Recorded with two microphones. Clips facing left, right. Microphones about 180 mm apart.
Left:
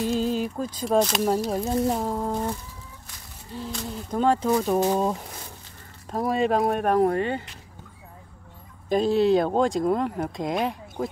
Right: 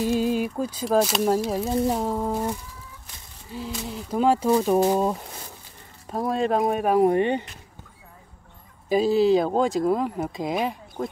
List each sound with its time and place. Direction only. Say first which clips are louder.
0.0 s speech: right 2 dB; 10° right (ahead or behind)
3.5 s speech: right 1 dB; 5° right (ahead or behind)
7.1 s speech: right 4 dB; 20° right (ahead or behind)
8.8 s speech: right 1 dB; 5° right (ahead or behind)